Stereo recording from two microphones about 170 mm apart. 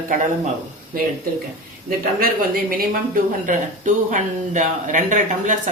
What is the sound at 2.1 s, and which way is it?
Speech, 60° right (ahead or behind).